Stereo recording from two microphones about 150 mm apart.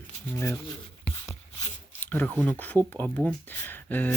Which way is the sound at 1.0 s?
20° left (ahead or behind).